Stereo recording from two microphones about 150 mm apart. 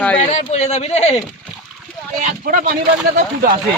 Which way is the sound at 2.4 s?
70° right (ahead or behind).